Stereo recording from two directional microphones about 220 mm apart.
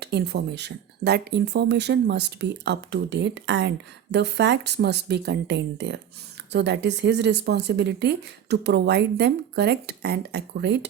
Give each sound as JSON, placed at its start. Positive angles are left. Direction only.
{"t": 0.0, "sound": "speech", "side_deg": -50}